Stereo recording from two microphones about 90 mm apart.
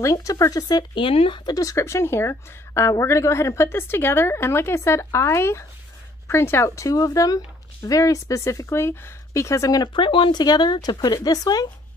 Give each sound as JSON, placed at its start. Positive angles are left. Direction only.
{"t": 0.0, "sound": "a woman's voice", "side_deg": 40}
{"t": 1.0, "sound": "speech", "side_deg": 80}
{"t": 1.4, "sound": "a woman's voice", "side_deg": 40}
{"t": 9.9, "sound": "speech", "side_deg": 70}
{"t": 10.4, "sound": "speech", "side_deg": 50}